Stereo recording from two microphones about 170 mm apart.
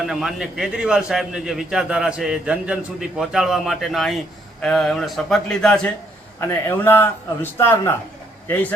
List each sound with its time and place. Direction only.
0.0 s a man's voice: centre (ahead or behind)